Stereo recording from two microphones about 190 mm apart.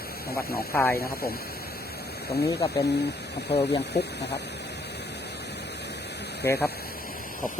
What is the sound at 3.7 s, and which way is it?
Speech, 60° left (ahead or behind).